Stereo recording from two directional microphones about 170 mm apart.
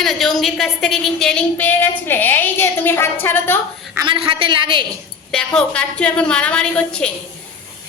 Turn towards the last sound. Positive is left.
turn(degrees=5)  # may be behind; listen again after turning